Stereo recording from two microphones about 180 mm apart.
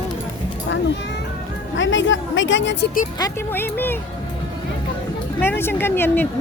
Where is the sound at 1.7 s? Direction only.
90° left.